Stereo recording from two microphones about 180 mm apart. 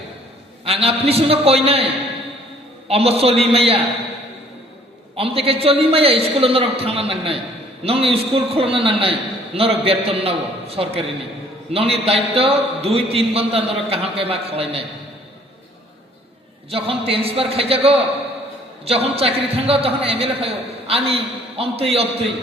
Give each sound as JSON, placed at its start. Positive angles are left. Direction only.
{"t": 0.6, "sound": "a man's voice", "side_deg": -35}
{"t": 5.1, "sound": "a man's voice", "side_deg": -30}
{"t": 16.6, "sound": "a man's voice", "side_deg": -35}